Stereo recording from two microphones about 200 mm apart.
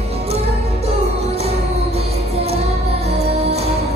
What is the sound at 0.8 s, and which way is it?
Music, 30° right (ahead or behind).